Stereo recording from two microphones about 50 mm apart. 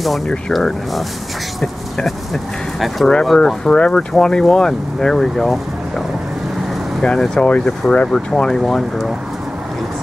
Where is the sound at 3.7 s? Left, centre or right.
Centre.